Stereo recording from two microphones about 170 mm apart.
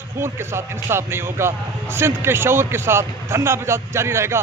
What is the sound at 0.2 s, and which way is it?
A man's voice, 15° right (ahead or behind).